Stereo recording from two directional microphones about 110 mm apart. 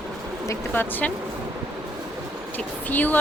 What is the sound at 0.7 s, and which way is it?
Speech, 15° left (ahead or behind).